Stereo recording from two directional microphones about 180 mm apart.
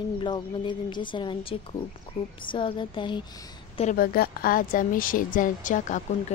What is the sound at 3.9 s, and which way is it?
A woman's voice, 55° left (ahead or behind).